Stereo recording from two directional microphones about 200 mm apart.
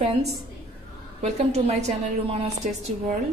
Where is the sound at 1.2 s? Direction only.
35° right (ahead or behind).